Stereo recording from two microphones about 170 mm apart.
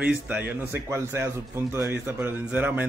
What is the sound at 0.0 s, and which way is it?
A man's voice, 10° right (ahead or behind).